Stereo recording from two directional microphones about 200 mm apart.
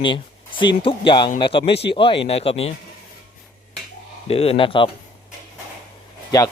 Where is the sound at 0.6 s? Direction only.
25° left (ahead or behind).